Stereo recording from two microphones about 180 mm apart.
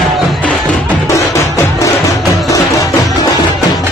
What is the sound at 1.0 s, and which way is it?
Music, 15° left (ahead or behind).